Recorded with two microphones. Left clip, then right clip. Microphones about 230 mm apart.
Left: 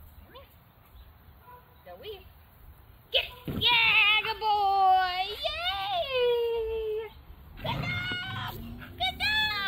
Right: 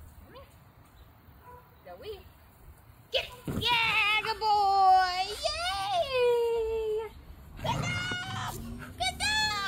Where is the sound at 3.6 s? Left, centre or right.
Centre.